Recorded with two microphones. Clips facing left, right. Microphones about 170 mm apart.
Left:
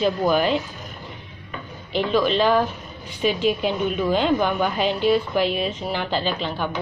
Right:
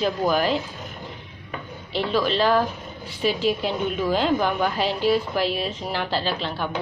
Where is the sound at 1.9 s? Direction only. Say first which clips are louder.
Left 3 dB; 35° right (ahead or behind).